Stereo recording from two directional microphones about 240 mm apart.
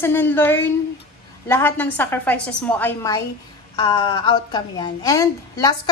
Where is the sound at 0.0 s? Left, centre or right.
Centre.